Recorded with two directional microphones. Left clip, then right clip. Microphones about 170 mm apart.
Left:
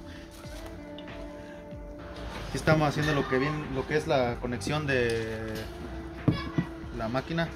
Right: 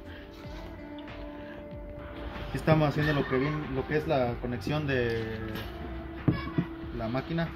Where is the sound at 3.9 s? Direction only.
5° right (ahead or behind).